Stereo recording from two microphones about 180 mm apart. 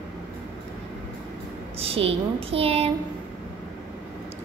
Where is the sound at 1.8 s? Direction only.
30° right (ahead or behind).